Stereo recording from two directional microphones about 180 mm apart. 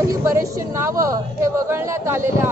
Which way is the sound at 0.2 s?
15° right (ahead or behind).